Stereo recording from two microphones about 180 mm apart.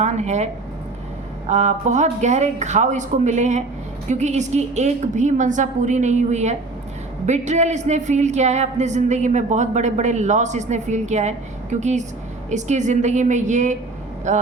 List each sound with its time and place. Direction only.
0.0 s a woman's voice: 40° right (ahead or behind)
1.5 s a woman's voice: 40° right (ahead or behind)